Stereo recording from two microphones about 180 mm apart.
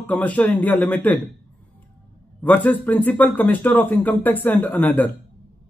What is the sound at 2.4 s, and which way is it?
Speech, 10° left (ahead or behind).